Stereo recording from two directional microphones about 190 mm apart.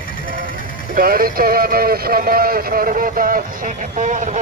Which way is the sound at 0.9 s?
50° right (ahead or behind).